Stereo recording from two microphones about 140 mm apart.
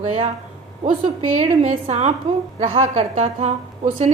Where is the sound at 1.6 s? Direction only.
50° right (ahead or behind).